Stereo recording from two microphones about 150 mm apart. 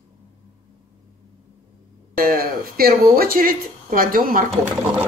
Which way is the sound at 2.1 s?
75° right (ahead or behind).